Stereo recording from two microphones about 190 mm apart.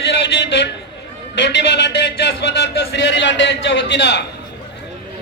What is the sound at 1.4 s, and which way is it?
A man's voice, 65° left (ahead or behind).